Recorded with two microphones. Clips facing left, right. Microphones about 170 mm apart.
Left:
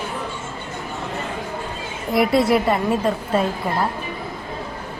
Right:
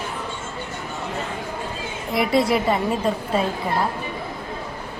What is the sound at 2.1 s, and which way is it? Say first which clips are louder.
A woman's voice: left 3 dB; centre (ahead or behind).